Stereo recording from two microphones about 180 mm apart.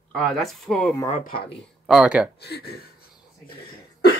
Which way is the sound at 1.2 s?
55° left (ahead or behind).